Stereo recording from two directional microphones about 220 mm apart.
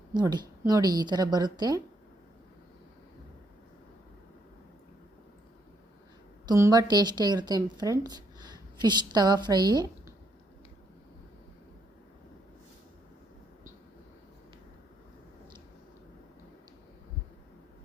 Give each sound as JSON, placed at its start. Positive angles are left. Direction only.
{"t": 0.1, "sound": "a woman's voice", "side_deg": -20}
{"t": 6.4, "sound": "a woman's voice", "side_deg": -15}